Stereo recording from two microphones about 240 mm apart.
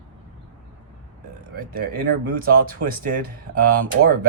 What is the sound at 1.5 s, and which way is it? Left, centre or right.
Speech, right.